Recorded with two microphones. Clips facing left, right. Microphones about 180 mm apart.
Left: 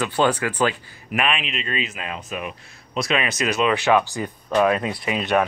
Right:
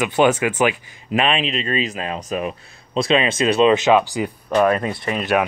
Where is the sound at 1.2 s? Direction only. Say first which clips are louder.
Right 5 dB; 30° right (ahead or behind); by 5.4 s centre (ahead or behind).